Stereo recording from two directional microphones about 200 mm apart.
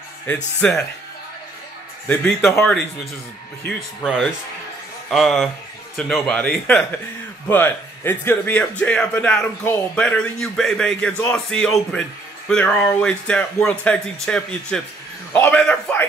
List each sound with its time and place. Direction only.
0.6 s speech: 5° left (ahead or behind)
2.0 s speech: 5° left (ahead or behind)
3.6 s speech: centre (ahead or behind)